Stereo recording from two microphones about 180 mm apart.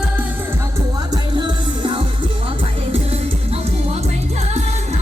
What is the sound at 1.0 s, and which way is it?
Music, 25° right (ahead or behind).